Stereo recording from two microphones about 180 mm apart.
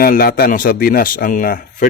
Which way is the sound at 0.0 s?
60° left (ahead or behind).